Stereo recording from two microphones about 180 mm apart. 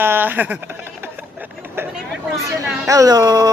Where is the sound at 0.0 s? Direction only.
10° right (ahead or behind).